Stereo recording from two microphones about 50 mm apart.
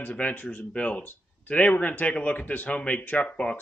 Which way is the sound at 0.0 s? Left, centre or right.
Left.